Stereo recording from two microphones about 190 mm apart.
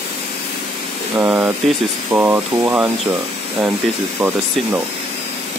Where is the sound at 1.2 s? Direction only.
10° right (ahead or behind).